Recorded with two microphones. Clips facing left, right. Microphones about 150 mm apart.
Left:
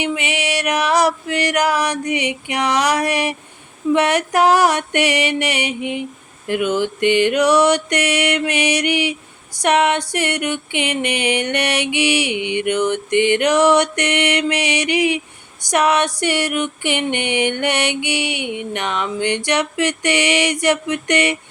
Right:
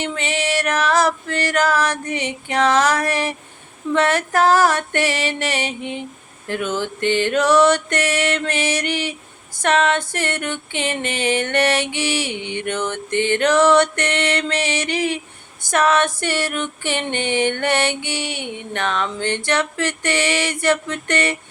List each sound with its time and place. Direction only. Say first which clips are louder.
0.0 s music: left 1 dB; 15° left (ahead or behind)